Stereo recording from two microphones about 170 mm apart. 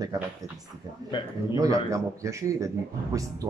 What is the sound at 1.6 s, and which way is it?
A man's voice, 20° right (ahead or behind).